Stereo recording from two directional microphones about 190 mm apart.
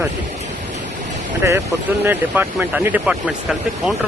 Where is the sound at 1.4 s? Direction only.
15° right (ahead or behind).